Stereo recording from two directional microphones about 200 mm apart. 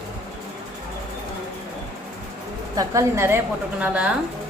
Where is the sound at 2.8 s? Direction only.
15° right (ahead or behind).